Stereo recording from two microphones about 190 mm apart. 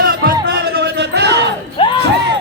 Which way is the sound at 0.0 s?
55° right (ahead or behind).